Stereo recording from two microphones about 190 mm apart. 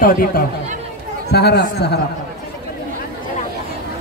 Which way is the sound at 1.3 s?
60° left (ahead or behind).